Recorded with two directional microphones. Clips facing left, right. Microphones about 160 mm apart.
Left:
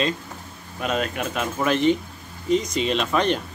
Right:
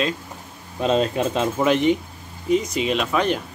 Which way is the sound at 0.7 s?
25° right (ahead or behind).